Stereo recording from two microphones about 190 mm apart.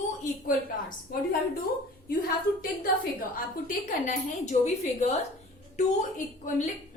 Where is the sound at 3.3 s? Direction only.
45° left (ahead or behind).